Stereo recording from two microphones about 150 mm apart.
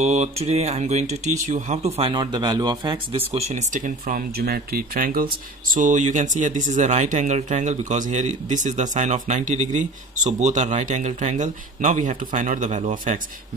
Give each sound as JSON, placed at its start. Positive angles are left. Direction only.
{"t": 0.0, "sound": "speech", "side_deg": -45}
{"t": 2.1, "sound": "speech", "side_deg": -25}